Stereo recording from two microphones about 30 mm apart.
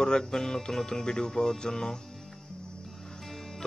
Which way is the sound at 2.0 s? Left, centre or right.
Centre.